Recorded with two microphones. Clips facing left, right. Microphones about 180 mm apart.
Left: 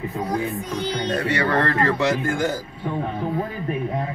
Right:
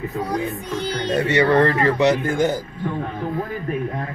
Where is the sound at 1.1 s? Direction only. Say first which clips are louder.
Right 6 dB; 25° right (ahead or behind).